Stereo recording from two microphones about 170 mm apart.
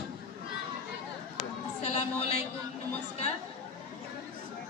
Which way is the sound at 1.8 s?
40° left (ahead or behind).